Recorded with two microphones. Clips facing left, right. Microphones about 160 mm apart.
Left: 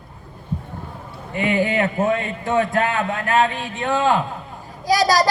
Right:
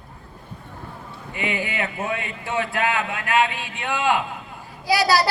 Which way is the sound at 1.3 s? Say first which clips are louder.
Left 8 dB; 45° left (ahead or behind).